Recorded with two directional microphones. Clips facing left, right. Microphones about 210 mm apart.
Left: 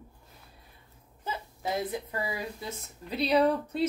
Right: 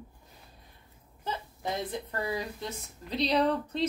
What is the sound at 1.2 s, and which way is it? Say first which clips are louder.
A woman's voice: even; 10° left (ahead or behind).